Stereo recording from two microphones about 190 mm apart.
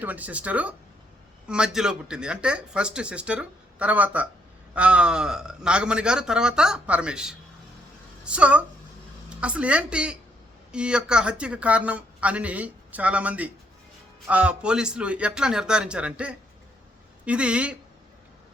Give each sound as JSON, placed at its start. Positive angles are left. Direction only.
{"t": 0.0, "sound": "speech", "side_deg": -10}